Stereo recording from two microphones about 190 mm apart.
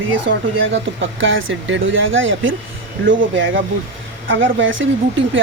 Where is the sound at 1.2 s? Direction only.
90° right.